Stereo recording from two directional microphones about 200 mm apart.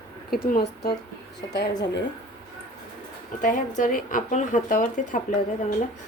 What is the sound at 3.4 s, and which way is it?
Speech, 40° left (ahead or behind).